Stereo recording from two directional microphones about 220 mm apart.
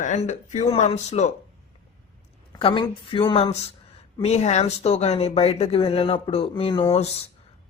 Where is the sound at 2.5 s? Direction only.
20° left (ahead or behind).